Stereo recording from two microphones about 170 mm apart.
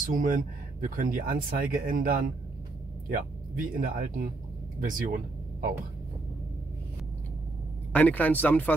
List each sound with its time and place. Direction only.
0.0 s speech: 50° right (ahead or behind)
7.9 s speech: 10° left (ahead or behind)